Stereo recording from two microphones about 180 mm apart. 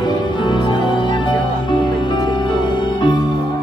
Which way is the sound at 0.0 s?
25° left (ahead or behind).